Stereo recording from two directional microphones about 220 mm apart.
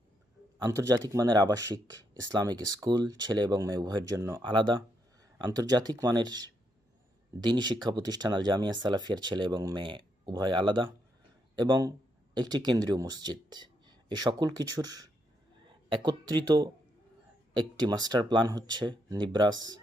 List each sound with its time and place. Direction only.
0.6 s speech: 15° right (ahead or behind)
7.4 s speech: 20° right (ahead or behind)